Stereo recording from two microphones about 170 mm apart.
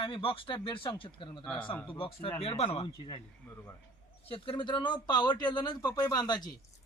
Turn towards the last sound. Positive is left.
turn(degrees=25)  # may be behind; listen again after turning